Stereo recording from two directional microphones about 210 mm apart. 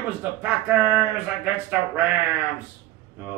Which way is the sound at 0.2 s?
10° right (ahead or behind).